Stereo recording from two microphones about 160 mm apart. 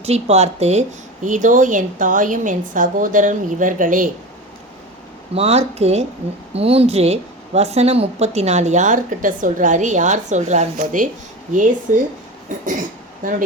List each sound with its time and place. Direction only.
0.0 s a woman's voice: 40° right (ahead or behind)
5.3 s a woman's voice: 40° right (ahead or behind)